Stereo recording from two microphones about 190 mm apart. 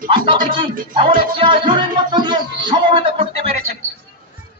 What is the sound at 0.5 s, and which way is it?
Speech, 25° right (ahead or behind).